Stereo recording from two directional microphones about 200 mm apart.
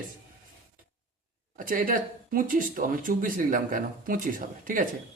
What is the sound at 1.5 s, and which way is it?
Speech, 45° right (ahead or behind).